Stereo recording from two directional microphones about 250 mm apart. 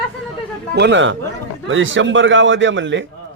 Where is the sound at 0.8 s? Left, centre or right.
Right.